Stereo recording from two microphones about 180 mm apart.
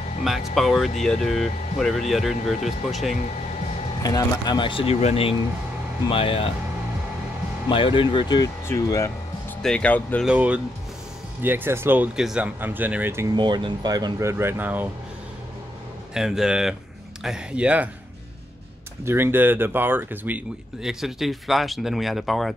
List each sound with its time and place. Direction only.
0.2 s speech: centre (ahead or behind)
4.0 s speech: 20° left (ahead or behind)
7.7 s speech: 30° left (ahead or behind)
9.6 s speech: 5° left (ahead or behind)
10.2 s speech: 5° right (ahead or behind)
13.4 s speech: 25° right (ahead or behind)
14.3 s speech: 10° right (ahead or behind)
16.1 s speech: centre (ahead or behind)
19.0 s speech: 10° right (ahead or behind)